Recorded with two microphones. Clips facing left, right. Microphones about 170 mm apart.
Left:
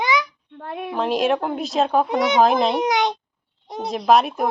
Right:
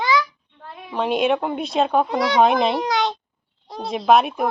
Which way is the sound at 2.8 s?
20° left (ahead or behind).